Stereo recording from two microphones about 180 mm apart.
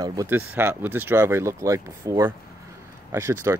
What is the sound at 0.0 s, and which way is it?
Speech, 20° right (ahead or behind).